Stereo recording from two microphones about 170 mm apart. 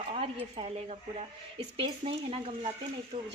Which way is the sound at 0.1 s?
35° right (ahead or behind).